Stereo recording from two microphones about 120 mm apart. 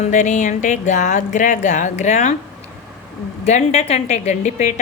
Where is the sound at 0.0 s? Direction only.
85° left.